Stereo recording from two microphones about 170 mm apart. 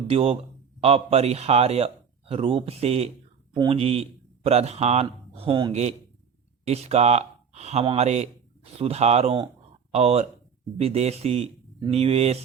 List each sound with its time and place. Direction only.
0.1 s a man's voice: 35° right (ahead or behind)